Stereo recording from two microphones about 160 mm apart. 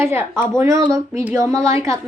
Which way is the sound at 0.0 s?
15° right (ahead or behind).